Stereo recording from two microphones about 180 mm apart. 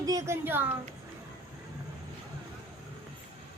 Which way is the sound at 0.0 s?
20° right (ahead or behind).